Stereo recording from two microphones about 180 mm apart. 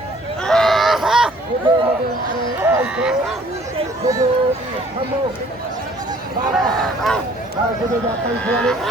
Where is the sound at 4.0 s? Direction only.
20° right (ahead or behind).